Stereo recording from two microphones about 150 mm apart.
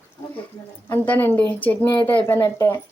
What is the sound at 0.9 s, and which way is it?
Speech, 15° left (ahead or behind).